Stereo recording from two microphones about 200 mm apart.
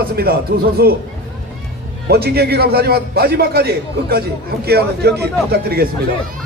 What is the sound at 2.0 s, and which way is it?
A man's voice, 50° right (ahead or behind).